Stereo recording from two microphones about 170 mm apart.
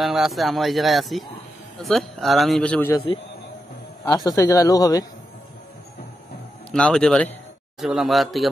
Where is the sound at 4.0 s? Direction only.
20° left (ahead or behind).